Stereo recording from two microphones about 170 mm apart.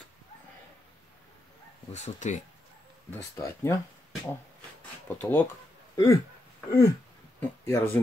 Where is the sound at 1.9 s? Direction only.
45° left (ahead or behind).